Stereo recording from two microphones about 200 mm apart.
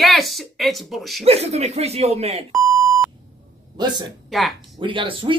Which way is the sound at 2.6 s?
15° right (ahead or behind).